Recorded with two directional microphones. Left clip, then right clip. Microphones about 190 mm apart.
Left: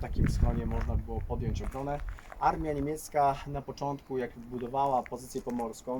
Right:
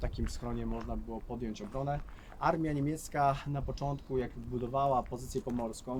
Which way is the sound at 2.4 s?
5° right (ahead or behind).